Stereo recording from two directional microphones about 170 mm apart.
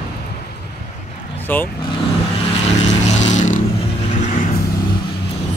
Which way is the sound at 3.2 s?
45° left (ahead or behind).